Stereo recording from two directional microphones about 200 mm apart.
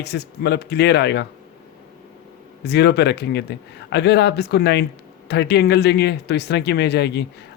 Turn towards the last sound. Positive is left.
turn(degrees=55)  # may be behind; listen again after turning